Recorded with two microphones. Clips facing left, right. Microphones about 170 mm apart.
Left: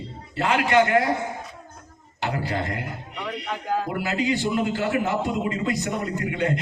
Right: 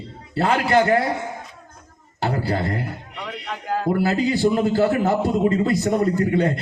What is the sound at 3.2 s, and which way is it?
Speech, centre (ahead or behind).